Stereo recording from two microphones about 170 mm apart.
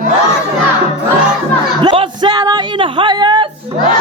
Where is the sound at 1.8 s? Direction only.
30° right (ahead or behind).